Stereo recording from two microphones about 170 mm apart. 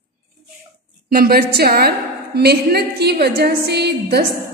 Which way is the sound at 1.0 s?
60° right (ahead or behind).